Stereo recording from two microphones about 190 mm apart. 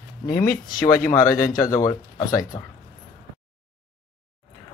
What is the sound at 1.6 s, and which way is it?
Speech, 15° left (ahead or behind).